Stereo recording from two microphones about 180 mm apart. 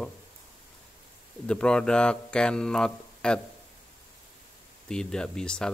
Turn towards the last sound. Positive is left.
turn(degrees=5)  # may be behind; listen again after turning